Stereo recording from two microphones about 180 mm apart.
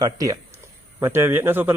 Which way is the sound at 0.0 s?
20° right (ahead or behind).